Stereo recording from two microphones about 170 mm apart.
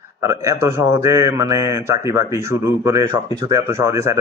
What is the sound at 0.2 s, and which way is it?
A man's voice, 15° right (ahead or behind).